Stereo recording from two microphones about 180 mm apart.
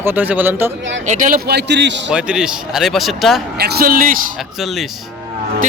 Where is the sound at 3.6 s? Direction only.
55° right (ahead or behind).